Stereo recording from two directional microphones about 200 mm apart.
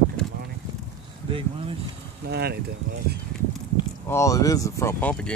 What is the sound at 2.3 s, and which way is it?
Speech, 55° right (ahead or behind).